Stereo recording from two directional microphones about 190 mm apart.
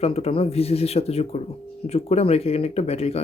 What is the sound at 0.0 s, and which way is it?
Speech, 30° left (ahead or behind).